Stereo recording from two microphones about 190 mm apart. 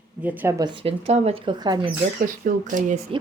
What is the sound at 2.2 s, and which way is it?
Speech, 40° right (ahead or behind).